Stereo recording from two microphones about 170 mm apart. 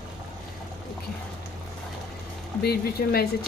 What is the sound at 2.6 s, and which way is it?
Speech, 65° left (ahead or behind).